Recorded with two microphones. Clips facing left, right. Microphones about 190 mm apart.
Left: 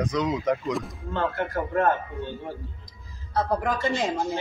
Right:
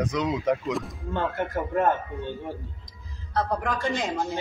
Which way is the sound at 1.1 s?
15° right (ahead or behind).